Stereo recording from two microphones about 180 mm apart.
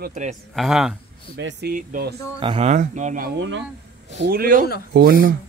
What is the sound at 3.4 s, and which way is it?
Speech, 90° right.